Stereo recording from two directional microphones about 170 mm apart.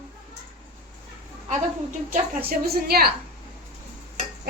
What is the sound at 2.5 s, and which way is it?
Speech, 65° right (ahead or behind).